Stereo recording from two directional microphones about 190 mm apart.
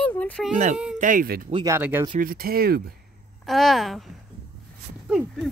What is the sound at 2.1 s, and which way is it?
Speech, 50° right (ahead or behind).